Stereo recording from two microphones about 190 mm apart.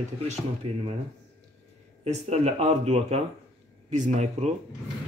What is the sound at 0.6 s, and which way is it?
Speech, 30° right (ahead or behind).